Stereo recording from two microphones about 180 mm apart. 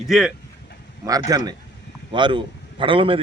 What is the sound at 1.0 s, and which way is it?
A man's voice, 20° right (ahead or behind).